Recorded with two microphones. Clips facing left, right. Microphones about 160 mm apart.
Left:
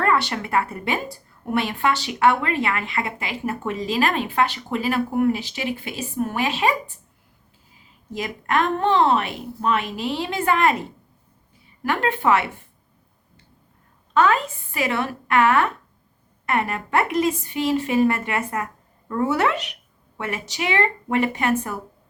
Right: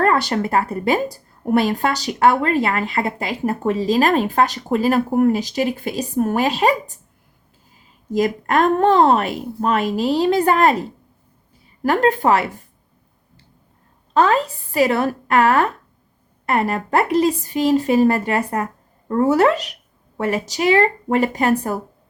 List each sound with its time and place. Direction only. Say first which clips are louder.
0.0 s a woman's voice: right 4 dB; 40° right (ahead or behind)
8.1 s a woman's voice: right 6 dB; 40° right (ahead or behind)
14.1 s a woman's voice: right 3 dB; 35° right (ahead or behind)